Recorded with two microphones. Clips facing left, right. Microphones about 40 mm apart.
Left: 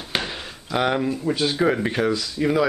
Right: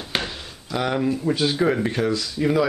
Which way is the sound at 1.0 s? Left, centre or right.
Centre.